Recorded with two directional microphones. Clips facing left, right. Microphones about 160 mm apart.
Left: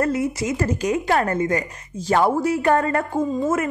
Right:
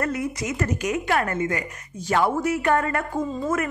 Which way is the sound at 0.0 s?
30° left (ahead or behind).